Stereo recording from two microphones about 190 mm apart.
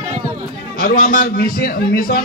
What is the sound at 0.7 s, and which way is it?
A man's voice, 50° left (ahead or behind).